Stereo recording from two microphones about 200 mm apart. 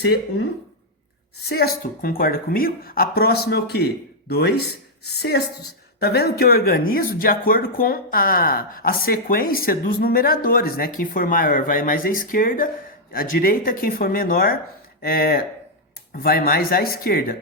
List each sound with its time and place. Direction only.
0.0 s speech: 55° left (ahead or behind)
1.5 s a woman's voice: 50° left (ahead or behind)